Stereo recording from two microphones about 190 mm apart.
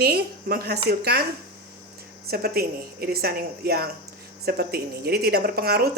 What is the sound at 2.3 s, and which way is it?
A woman's voice, 55° right (ahead or behind).